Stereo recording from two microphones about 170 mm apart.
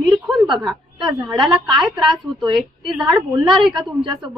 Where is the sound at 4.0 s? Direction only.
25° right (ahead or behind).